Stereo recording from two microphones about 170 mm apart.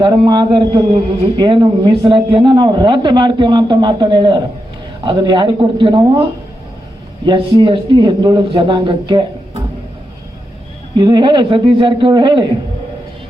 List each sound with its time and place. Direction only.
0.0 s a man's voice: 25° right (ahead or behind)
7.3 s a man's voice: 30° right (ahead or behind)
10.9 s a man's voice: 25° right (ahead or behind)